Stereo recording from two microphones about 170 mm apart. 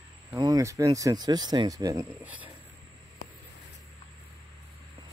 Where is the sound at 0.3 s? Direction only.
20° right (ahead or behind).